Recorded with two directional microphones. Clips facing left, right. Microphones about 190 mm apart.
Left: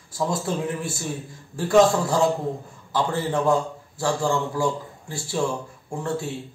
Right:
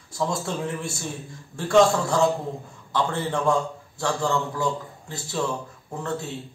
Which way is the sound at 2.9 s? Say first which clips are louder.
Left 2 dB; 5° left (ahead or behind).